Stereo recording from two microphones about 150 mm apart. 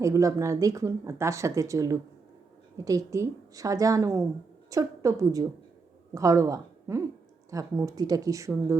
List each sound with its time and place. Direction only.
0.0 s a woman's voice: 20° right (ahead or behind)